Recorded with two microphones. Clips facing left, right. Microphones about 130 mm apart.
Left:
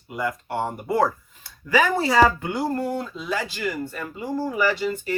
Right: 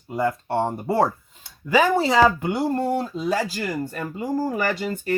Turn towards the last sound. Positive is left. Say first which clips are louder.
# left 1 dB
turn(degrees=-45)  # may be behind; listen again after turning